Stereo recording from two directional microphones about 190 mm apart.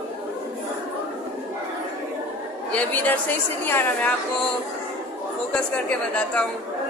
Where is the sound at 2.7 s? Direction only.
5° left (ahead or behind).